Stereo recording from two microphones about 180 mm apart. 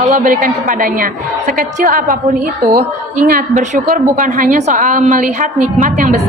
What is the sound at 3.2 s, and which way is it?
A woman's voice, 45° right (ahead or behind).